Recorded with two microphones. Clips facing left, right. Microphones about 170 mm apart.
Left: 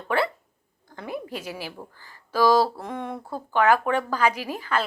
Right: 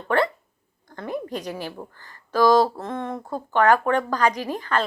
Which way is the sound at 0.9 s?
10° left (ahead or behind).